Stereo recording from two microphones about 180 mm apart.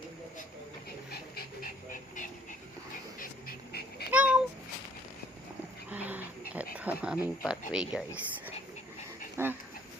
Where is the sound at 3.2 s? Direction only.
60° left (ahead or behind).